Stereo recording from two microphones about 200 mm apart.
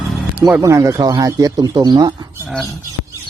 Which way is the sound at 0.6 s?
15° right (ahead or behind).